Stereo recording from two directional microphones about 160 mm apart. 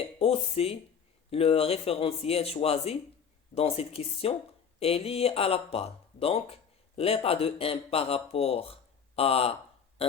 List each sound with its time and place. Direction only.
0.2 s speech: 35° left (ahead or behind)